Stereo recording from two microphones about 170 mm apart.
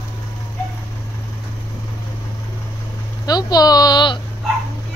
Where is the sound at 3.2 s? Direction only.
25° left (ahead or behind).